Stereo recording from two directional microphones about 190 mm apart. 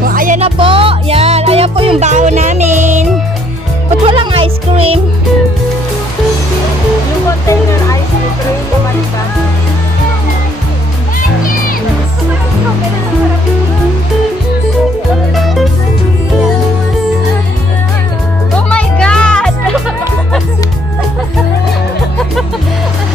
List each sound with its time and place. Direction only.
0.0 s music: 45° right (ahead or behind)
0.4 s music: 30° right (ahead or behind)
4.0 s music: 30° right (ahead or behind)
15.3 s music: centre (ahead or behind)
18.7 s music: 5° left (ahead or behind)